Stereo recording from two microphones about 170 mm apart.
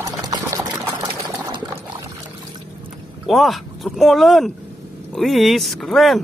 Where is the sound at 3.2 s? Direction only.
Centre (ahead or behind).